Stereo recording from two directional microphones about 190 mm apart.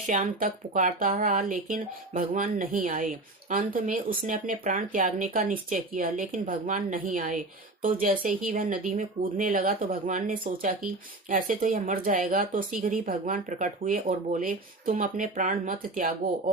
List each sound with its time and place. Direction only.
0.1 s speech: 45° right (ahead or behind)